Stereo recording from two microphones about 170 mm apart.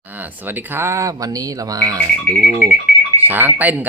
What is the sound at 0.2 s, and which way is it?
Speech, 10° right (ahead or behind).